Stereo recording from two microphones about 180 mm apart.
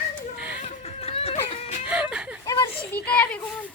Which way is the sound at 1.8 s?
5° right (ahead or behind).